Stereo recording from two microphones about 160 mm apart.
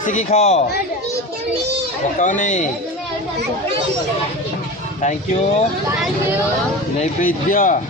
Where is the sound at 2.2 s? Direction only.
50° left (ahead or behind).